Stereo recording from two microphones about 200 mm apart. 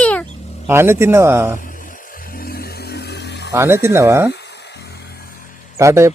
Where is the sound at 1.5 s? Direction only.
40° left (ahead or behind); by 3.5 s 60° left (ahead or behind).